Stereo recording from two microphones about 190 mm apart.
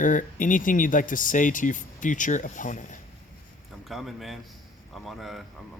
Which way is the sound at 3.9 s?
Centre (ahead or behind).